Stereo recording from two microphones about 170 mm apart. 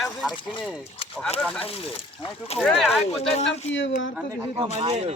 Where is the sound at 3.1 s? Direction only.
40° left (ahead or behind).